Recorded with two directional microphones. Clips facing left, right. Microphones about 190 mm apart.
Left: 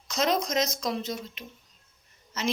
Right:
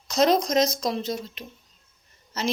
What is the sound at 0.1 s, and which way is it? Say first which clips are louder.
A woman's voice: right 6 dB; 35° right (ahead or behind).